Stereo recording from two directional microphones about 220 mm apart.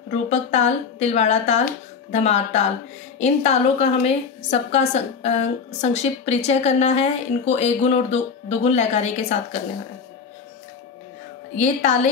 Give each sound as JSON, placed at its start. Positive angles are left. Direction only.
{"t": 0.3, "sound": "a woman's voice", "side_deg": 30}
{"t": 11.5, "sound": "speech", "side_deg": 35}